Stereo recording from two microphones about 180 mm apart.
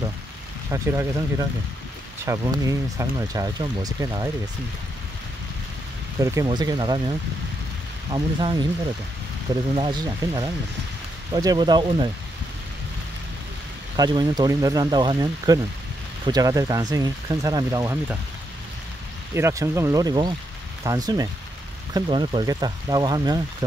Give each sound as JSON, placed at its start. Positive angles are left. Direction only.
{"t": 0.7, "sound": "speech", "side_deg": -15}
{"t": 2.2, "sound": "speech", "side_deg": -20}
{"t": 6.1, "sound": "speech", "side_deg": -15}
{"t": 9.8, "sound": "speech", "side_deg": -25}
{"t": 13.9, "sound": "speech", "side_deg": -20}
{"t": 19.3, "sound": "speech", "side_deg": -15}